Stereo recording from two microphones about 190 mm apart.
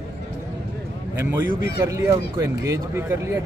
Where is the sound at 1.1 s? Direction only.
10° right (ahead or behind).